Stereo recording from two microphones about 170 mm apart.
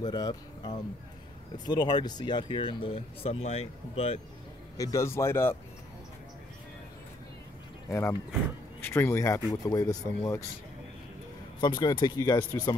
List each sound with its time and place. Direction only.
0.0 s speech: 25° left (ahead or behind)
4.7 s speech: 20° left (ahead or behind)
7.9 s speech: 15° left (ahead or behind)
11.6 s speech: 25° left (ahead or behind)